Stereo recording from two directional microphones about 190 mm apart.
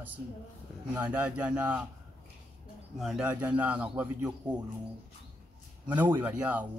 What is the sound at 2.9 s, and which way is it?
A man's voice, centre (ahead or behind).